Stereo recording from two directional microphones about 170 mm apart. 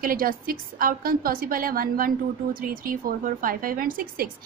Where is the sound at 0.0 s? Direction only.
55° right (ahead or behind).